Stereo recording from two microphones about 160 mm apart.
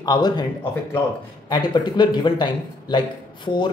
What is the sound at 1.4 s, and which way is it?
A man's voice, 30° left (ahead or behind).